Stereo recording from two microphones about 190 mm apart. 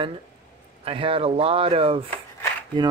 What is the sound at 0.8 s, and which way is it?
Speech, 30° right (ahead or behind).